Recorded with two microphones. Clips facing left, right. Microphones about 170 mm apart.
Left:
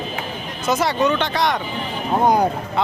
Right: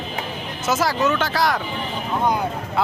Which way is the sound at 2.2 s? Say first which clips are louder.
Left 5 dB; 45° left (ahead or behind).